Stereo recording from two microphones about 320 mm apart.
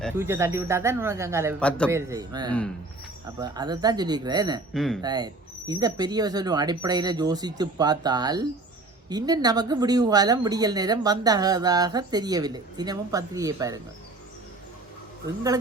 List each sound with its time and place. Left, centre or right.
0.2 s speech: centre
1.5 s a man's voice: centre
1.9 s speech: centre
4.7 s a man's voice: centre
5.0 s speech: centre